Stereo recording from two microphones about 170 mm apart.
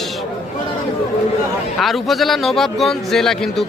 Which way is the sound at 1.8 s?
Centre (ahead or behind).